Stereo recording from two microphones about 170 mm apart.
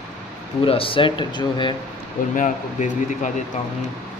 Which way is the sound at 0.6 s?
30° left (ahead or behind).